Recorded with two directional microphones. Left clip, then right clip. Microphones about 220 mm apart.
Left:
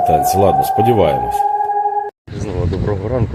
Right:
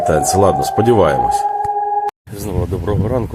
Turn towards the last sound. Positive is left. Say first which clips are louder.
# right 1 dB
turn(degrees=-20)  # may be behind; listen again after turning